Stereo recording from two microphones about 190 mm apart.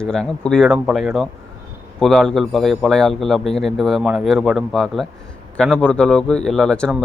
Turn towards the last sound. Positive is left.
turn(degrees=5)  # may be behind; listen again after turning